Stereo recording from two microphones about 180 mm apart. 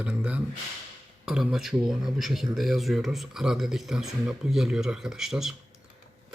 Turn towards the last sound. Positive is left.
turn(degrees=0)  # may be behind; listen again after turning